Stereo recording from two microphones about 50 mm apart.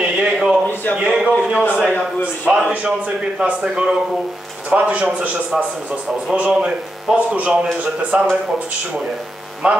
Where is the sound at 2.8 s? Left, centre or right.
Right.